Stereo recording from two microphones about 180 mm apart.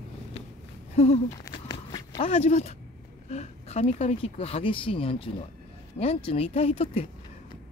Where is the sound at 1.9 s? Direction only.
25° left (ahead or behind).